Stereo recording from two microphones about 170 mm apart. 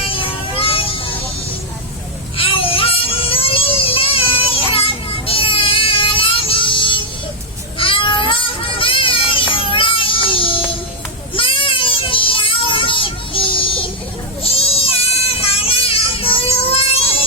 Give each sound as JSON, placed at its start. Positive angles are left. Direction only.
{"t": 0.0, "sound": "vehicle", "side_deg": 30}
{"t": 2.4, "sound": "a sound", "side_deg": 30}
{"t": 7.8, "sound": "children playing", "side_deg": 30}
{"t": 11.3, "sound": "child singing", "side_deg": 30}
{"t": 14.4, "sound": "goat", "side_deg": 35}